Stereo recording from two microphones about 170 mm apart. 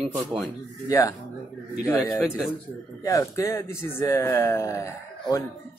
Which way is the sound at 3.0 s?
20° left (ahead or behind).